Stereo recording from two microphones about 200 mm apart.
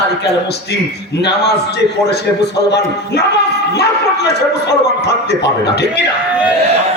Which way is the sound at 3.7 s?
55° left (ahead or behind).